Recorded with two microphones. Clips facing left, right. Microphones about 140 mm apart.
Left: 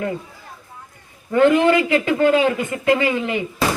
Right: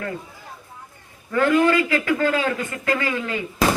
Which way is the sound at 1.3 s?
20° left (ahead or behind).